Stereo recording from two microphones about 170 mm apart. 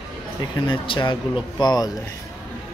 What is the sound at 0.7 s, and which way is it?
Speech, 25° left (ahead or behind).